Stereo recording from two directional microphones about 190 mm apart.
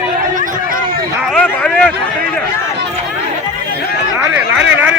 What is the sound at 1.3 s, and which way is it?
Speech, 5° left (ahead or behind).